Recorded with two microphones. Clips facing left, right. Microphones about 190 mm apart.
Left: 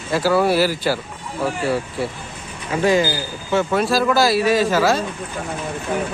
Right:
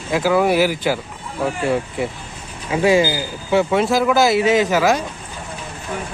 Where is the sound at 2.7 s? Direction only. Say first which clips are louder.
Right 2 dB; 10° right (ahead or behind).